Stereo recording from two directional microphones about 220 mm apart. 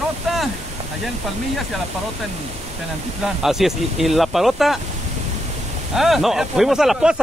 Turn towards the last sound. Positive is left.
turn(degrees=-5)  # may be behind; listen again after turning